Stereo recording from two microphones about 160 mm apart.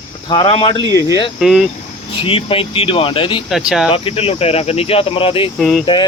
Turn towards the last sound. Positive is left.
turn(degrees=35)  # may be behind; listen again after turning